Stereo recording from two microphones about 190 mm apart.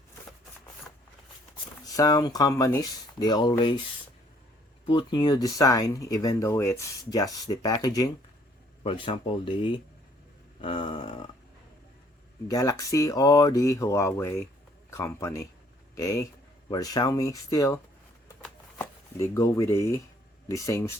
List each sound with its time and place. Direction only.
1.9 s speech: 20° left (ahead or behind)
4.9 s speech: 25° left (ahead or behind)
12.5 s speech: 15° left (ahead or behind)
18.8 s speech: 15° left (ahead or behind)